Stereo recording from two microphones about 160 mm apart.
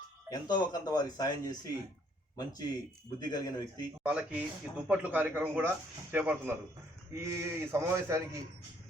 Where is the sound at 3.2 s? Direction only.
25° left (ahead or behind).